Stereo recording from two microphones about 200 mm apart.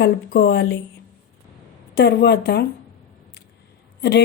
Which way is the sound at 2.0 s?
55° left (ahead or behind).